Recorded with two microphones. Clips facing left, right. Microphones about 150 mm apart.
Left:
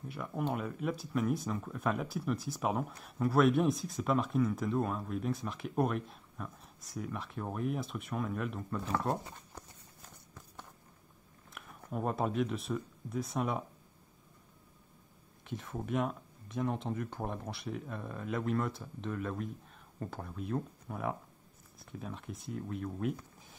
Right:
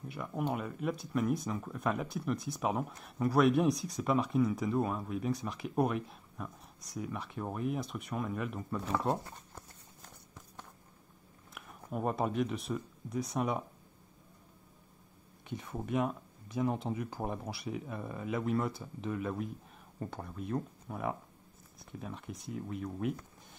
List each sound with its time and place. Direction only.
0.1 s speech: centre (ahead or behind)
11.5 s speech: centre (ahead or behind)
15.4 s speech: centre (ahead or behind)